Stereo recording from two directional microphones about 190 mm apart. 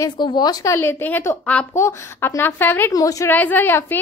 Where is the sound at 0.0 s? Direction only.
20° left (ahead or behind).